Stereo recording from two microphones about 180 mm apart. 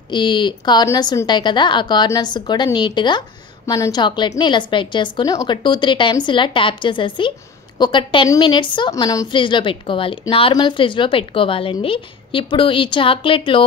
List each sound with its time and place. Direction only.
0.1 s a woman's voice: 25° left (ahead or behind)